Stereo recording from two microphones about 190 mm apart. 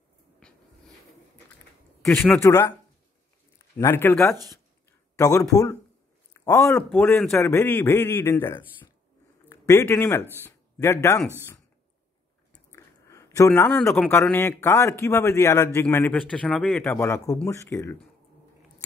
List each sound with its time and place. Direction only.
0.4 s a sound: 5° left (ahead or behind)
2.0 s a man's voice: 10° left (ahead or behind)
12.5 s speech: 15° left (ahead or behind)